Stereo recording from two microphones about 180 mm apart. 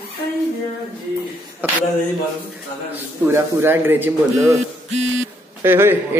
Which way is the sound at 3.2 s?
10° right (ahead or behind).